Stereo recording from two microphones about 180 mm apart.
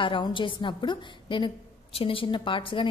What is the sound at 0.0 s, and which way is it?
A woman's voice, 30° left (ahead or behind).